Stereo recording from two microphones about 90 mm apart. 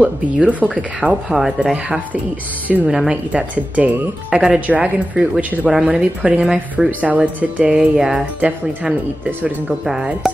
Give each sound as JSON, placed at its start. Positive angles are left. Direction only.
{"t": 0.0, "sound": "speech", "side_deg": -15}
{"t": 3.3, "sound": "speech", "side_deg": -15}
{"t": 5.7, "sound": "speech", "side_deg": -5}
{"t": 6.9, "sound": "speech", "side_deg": -15}